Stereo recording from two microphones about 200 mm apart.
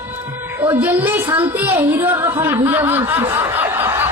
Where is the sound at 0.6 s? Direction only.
10° right (ahead or behind).